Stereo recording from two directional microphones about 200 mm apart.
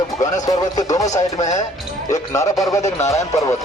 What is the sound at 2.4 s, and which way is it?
Speech, 15° left (ahead or behind).